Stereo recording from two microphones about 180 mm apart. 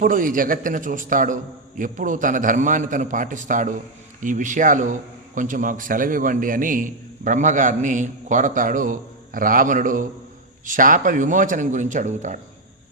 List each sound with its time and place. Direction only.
0.0 s a man's voice: 50° right (ahead or behind)